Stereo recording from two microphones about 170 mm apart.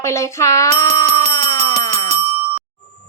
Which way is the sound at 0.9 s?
45° right (ahead or behind).